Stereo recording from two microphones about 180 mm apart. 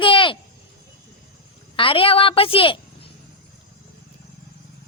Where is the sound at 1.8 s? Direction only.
30° left (ahead or behind).